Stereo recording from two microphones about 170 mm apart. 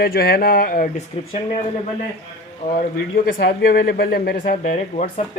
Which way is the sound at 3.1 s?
65° left (ahead or behind).